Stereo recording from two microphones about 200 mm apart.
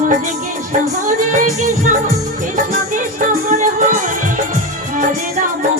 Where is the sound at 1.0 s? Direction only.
40° right (ahead or behind).